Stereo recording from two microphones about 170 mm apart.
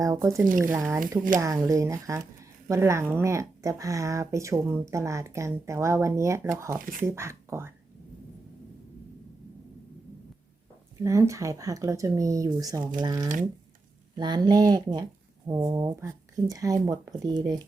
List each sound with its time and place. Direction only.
0.0 s speech: 20° right (ahead or behind)
6.7 s speech: 55° right (ahead or behind)
7.0 s speech: 15° right (ahead or behind)
11.0 s speech: 15° right (ahead or behind)